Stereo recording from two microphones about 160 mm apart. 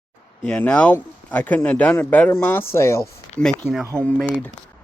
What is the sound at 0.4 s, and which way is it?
Speech, 10° left (ahead or behind).